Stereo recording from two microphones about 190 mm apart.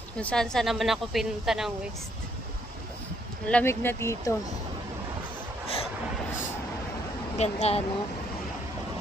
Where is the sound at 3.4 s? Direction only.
10° left (ahead or behind).